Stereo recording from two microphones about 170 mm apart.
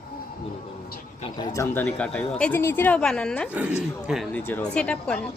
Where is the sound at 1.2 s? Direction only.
20° left (ahead or behind).